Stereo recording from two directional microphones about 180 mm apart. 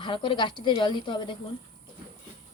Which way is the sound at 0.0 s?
25° left (ahead or behind).